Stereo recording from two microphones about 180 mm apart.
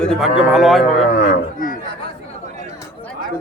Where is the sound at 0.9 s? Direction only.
40° left (ahead or behind).